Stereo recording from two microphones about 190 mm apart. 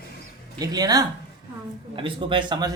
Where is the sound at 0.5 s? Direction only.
20° right (ahead or behind).